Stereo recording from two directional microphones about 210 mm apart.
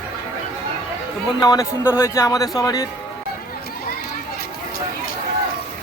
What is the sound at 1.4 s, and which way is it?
Speech, 15° left (ahead or behind).